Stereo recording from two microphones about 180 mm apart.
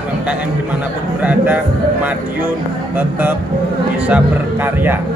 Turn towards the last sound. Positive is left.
turn(degrees=-10)  # may be behind; listen again after turning